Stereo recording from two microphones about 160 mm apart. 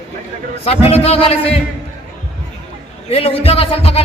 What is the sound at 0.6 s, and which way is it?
Speech, 40° left (ahead or behind).